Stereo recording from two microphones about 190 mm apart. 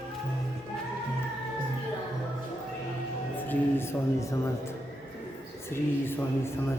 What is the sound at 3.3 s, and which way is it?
Speech, 10° left (ahead or behind).